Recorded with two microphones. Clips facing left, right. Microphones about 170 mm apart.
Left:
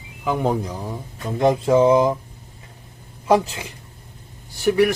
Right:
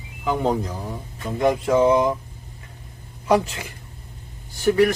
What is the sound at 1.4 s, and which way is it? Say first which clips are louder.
Speech: left 2 dB; 25° left (ahead or behind).